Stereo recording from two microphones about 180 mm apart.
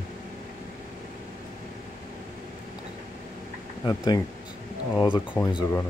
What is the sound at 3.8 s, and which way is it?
Speech, 20° left (ahead or behind).